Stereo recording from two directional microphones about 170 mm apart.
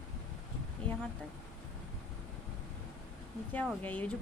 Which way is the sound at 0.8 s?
10° left (ahead or behind).